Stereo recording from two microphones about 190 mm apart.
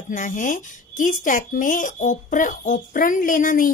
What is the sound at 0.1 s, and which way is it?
A woman's voice, 45° left (ahead or behind).